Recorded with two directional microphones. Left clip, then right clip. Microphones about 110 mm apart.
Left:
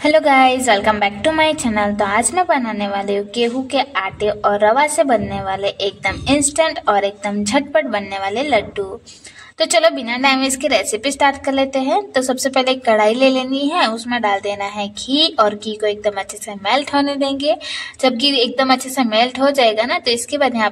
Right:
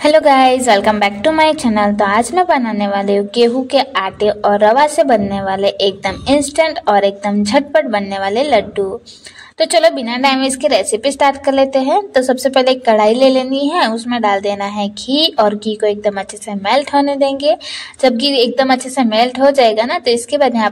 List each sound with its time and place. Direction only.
0.0 s a woman's voice: 30° right (ahead or behind)
11.1 s a woman's voice: 30° right (ahead or behind)